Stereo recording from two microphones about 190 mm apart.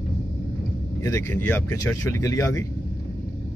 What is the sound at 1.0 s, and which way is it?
Speech, 15° left (ahead or behind).